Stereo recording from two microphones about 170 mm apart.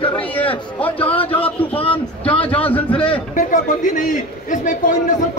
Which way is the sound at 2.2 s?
10° left (ahead or behind).